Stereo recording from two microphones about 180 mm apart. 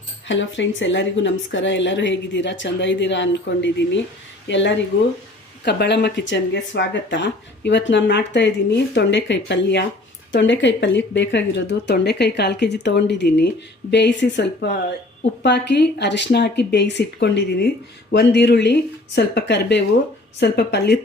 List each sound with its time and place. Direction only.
0.3 s speech: 90° left
5.6 s speech: 70° left (ahead or behind)
10.3 s speech: 85° left